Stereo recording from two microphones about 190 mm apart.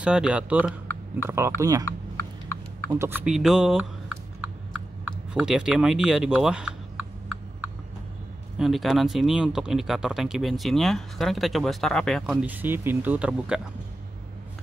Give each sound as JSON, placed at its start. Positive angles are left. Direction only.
{"t": 0.0, "sound": "speech", "side_deg": -5}
{"t": 2.9, "sound": "speech", "side_deg": -15}
{"t": 3.3, "sound": "speech", "side_deg": 0}
{"t": 5.0, "sound": "a sound", "side_deg": -5}
{"t": 8.5, "sound": "speech", "side_deg": 0}